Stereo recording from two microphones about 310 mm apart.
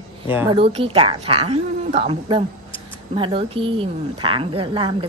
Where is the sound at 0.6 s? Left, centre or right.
Centre.